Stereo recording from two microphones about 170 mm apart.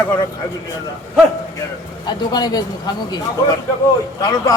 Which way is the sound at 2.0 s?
25° left (ahead or behind).